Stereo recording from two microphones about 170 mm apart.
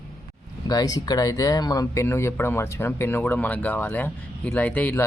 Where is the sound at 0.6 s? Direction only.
20° left (ahead or behind).